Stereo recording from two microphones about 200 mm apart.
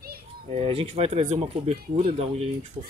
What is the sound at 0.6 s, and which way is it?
Speech, 30° right (ahead or behind).